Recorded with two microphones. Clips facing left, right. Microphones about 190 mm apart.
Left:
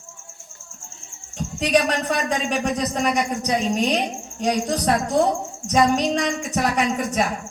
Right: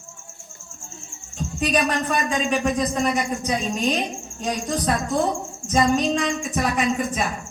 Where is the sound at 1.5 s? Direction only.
75° left (ahead or behind).